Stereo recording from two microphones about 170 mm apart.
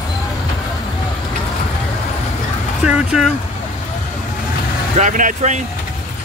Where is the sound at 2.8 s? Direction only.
5° right (ahead or behind).